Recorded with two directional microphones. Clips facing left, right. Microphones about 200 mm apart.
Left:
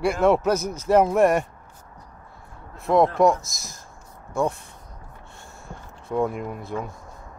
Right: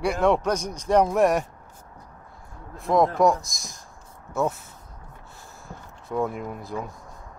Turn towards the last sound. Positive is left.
turn(degrees=0)  # may be behind; listen again after turning